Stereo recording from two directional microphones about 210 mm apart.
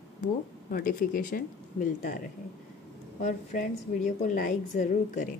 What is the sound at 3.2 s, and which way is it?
A woman's voice, 35° left (ahead or behind).